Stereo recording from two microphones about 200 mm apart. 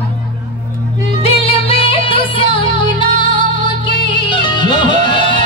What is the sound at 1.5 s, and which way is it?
Music, 25° left (ahead or behind).